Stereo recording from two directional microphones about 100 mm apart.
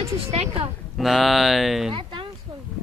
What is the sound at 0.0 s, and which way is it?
Speech, 85° right.